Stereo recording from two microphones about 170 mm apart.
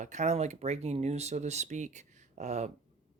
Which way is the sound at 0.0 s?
45° right (ahead or behind).